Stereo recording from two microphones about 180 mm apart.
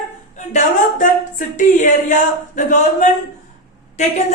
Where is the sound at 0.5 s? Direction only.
45° left (ahead or behind).